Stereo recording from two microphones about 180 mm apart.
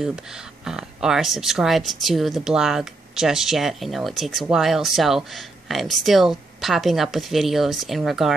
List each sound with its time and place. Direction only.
0.0 s speech: 5° right (ahead or behind)